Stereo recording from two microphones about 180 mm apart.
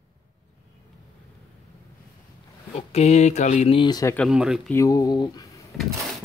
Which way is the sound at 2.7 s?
35° left (ahead or behind).